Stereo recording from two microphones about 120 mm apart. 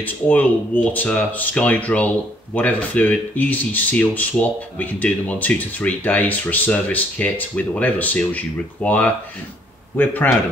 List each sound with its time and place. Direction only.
0.0 s speech: 15° left (ahead or behind)